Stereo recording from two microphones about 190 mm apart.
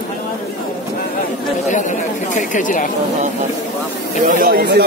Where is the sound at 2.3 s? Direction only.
45° left (ahead or behind).